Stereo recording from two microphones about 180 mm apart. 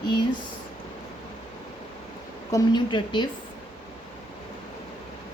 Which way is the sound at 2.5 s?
25° left (ahead or behind).